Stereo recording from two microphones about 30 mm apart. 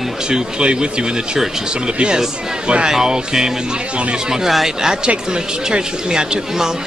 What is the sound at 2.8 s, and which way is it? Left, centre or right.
Speech, right.